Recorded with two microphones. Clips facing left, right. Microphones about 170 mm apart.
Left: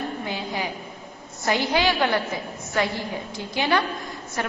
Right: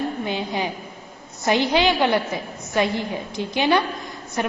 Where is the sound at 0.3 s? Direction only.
20° right (ahead or behind).